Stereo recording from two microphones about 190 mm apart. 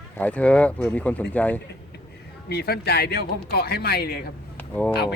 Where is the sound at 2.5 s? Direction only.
55° left (ahead or behind).